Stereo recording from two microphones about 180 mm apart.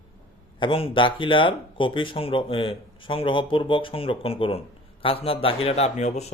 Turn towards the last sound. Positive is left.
turn(degrees=40)  # may be behind; listen again after turning